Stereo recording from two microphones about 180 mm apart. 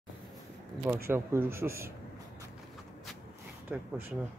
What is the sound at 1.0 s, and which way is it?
Speech, 15° right (ahead or behind).